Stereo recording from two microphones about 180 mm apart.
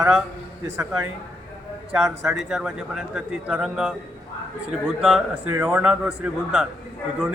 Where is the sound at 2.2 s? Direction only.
5° right (ahead or behind).